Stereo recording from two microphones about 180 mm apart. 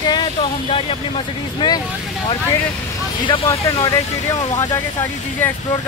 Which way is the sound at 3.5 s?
20° left (ahead or behind).